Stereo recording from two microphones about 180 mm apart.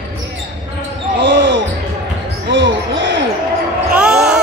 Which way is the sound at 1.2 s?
85° right.